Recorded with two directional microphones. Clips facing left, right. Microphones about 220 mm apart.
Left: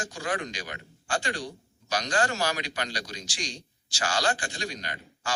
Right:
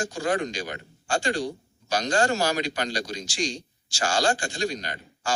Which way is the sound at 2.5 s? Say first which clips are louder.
Right 5 dB; 45° right (ahead or behind).